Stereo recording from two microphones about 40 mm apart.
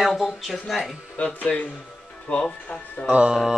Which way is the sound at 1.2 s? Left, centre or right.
Left.